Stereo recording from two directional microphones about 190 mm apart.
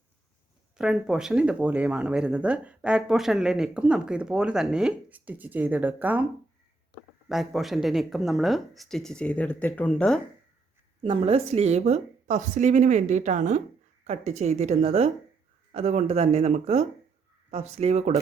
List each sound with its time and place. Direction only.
0.8 s speech: 5° right (ahead or behind)
7.3 s speech: centre (ahead or behind)
11.0 s a woman's voice: 30° right (ahead or behind)